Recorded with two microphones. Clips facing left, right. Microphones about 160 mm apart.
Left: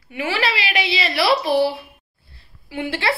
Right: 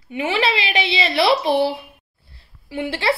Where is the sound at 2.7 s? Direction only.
30° right (ahead or behind).